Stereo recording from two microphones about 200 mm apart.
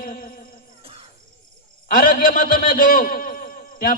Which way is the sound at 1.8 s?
45° left (ahead or behind).